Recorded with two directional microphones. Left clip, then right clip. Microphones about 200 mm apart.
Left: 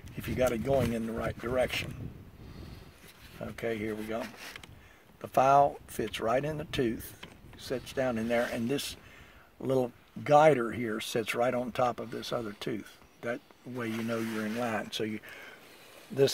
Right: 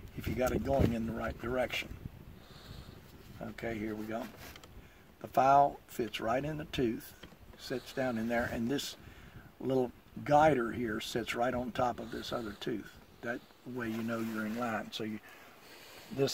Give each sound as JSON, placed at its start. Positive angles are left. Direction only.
{"t": 0.2, "sound": "speech", "side_deg": 50}
{"t": 3.5, "sound": "speech", "side_deg": 50}
{"t": 5.2, "sound": "speech", "side_deg": 50}